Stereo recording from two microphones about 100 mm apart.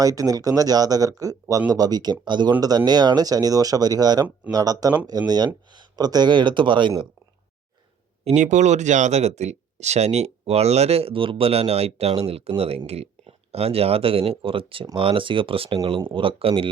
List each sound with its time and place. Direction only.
0.0 s speech: 35° right (ahead or behind); by 6.9 s 55° right (ahead or behind)
8.3 s speech: 90° right; by 16.6 s 65° right (ahead or behind)